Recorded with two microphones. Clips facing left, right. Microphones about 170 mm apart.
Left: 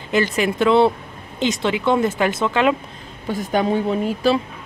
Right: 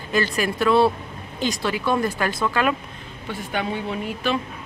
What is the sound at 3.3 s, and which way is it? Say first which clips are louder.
A woman's voice: left 7 dB; 40° left (ahead or behind).